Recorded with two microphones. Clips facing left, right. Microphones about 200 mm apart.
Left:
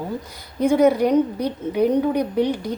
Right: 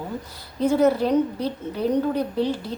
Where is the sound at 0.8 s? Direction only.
15° left (ahead or behind).